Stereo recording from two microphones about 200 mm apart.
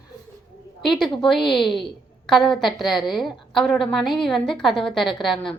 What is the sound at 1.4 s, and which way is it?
Speech, 25° left (ahead or behind).